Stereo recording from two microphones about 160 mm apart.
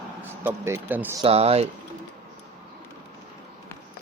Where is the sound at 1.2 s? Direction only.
40° right (ahead or behind).